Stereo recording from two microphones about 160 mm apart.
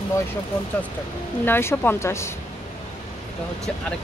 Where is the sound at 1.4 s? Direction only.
15° left (ahead or behind).